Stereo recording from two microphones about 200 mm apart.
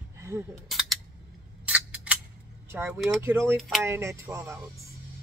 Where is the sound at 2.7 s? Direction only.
10° right (ahead or behind).